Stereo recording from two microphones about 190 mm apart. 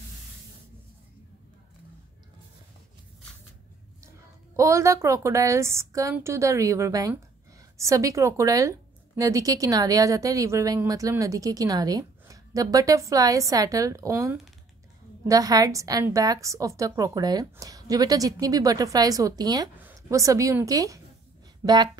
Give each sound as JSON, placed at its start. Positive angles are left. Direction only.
{"t": 4.6, "sound": "a woman's voice", "side_deg": -15}